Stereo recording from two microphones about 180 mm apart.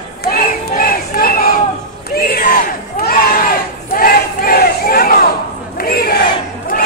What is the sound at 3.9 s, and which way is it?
Battle cry, 55° left (ahead or behind).